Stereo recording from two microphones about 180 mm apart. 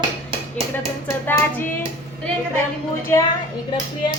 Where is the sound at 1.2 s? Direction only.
10° left (ahead or behind).